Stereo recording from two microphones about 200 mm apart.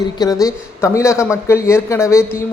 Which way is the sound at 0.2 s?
20° left (ahead or behind).